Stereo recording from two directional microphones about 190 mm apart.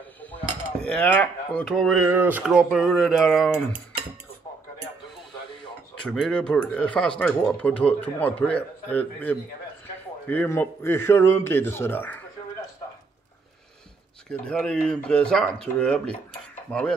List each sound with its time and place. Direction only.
0.2 s a sound: 5° left (ahead or behind)
2.0 s speech: 10° right (ahead or behind)
6.0 s speech: 5° left (ahead or behind)
14.3 s speech: 5° left (ahead or behind)